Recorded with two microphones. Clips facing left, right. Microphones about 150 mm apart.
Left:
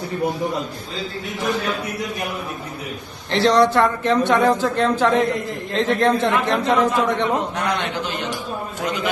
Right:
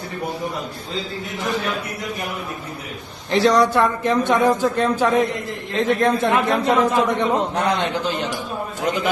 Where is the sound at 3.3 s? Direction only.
15° right (ahead or behind).